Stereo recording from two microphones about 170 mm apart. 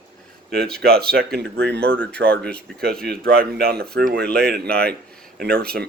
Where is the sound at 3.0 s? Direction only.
65° right (ahead or behind).